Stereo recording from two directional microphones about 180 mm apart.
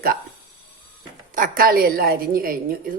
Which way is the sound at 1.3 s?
50° right (ahead or behind).